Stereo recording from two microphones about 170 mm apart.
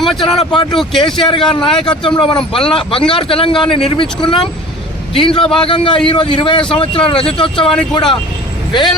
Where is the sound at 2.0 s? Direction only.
30° left (ahead or behind).